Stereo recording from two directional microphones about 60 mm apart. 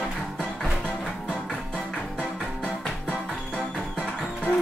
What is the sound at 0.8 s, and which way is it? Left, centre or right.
Music, centre.